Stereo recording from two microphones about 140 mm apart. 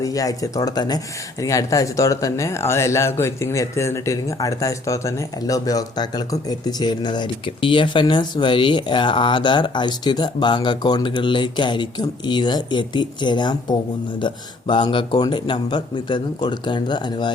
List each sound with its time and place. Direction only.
0.0 s speech: 25° left (ahead or behind)